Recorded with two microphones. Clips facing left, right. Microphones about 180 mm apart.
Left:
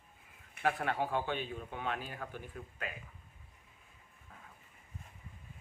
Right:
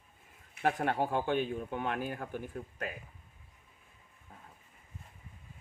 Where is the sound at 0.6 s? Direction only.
45° right (ahead or behind).